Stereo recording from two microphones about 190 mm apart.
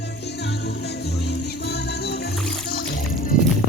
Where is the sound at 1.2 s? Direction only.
60° left (ahead or behind).